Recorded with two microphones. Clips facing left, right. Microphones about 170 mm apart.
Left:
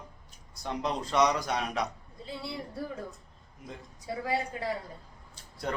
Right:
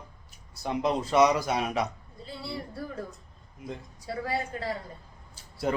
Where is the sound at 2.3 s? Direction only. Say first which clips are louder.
Right 1 dB; 15° left (ahead or behind).